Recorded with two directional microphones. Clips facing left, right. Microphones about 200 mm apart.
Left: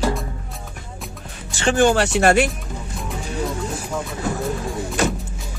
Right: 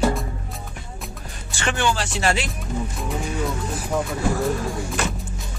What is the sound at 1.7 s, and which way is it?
Speech, 50° left (ahead or behind).